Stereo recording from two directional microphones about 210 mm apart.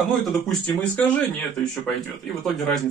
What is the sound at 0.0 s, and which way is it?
Speech, centre (ahead or behind).